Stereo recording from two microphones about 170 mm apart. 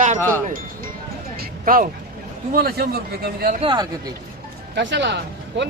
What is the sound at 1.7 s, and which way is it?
A man's voice, 60° right (ahead or behind).